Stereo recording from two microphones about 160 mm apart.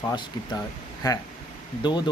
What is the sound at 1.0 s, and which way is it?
Speech, 25° left (ahead or behind).